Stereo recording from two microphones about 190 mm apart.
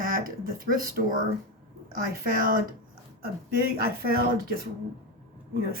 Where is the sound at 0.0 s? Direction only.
50° right (ahead or behind).